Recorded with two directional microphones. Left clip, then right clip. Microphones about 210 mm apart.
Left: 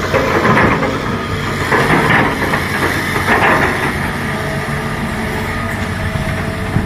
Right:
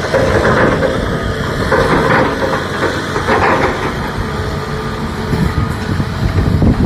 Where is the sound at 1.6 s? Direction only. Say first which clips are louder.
Even; 50° left (ahead or behind).